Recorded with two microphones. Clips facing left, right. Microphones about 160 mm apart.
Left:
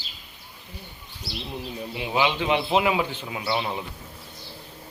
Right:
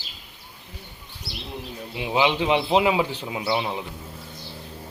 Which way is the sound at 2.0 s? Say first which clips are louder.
Right 2 dB; 20° right (ahead or behind).